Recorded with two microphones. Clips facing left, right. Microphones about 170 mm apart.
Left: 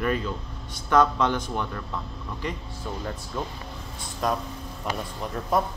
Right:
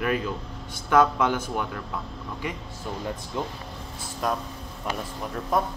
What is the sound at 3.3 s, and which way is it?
Speech, 15° right (ahead or behind).